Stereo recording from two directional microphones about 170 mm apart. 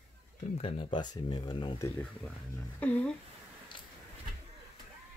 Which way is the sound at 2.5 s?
10° left (ahead or behind).